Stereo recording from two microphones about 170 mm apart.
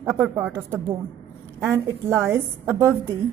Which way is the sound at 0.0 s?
15° right (ahead or behind).